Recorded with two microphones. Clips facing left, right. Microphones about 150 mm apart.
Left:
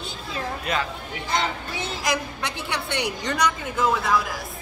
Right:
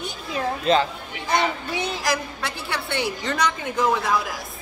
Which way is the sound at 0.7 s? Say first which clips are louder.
Right 8 dB; 25° right (ahead or behind).